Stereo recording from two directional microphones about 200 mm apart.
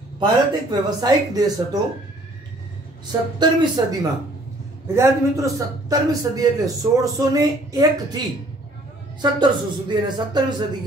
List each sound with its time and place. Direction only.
0.2 s speech: 20° right (ahead or behind)
3.1 s a man's voice: 20° right (ahead or behind)